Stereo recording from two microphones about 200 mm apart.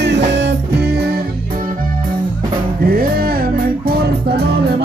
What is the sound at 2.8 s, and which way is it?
Music, 50° right (ahead or behind).